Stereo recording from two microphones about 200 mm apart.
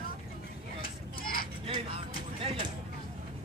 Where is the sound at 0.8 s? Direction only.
45° left (ahead or behind).